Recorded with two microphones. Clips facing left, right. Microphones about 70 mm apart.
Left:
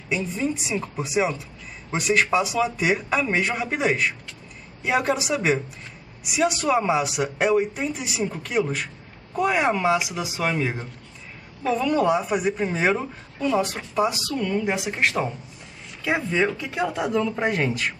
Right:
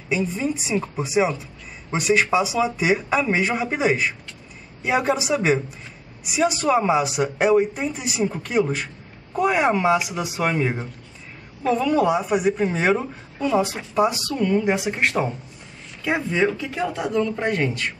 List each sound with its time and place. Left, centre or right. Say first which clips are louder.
0.1 s speech: right 2 dB; centre